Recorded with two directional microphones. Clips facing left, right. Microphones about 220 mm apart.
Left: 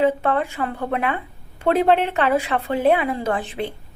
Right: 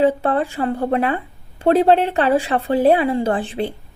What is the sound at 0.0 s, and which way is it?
A woman's voice, 35° right (ahead or behind).